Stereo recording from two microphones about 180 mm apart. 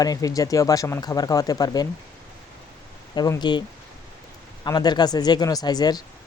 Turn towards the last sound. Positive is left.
turn(degrees=20)  # may be behind; listen again after turning